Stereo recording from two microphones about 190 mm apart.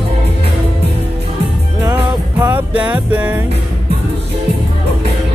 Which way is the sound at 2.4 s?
10° right (ahead or behind).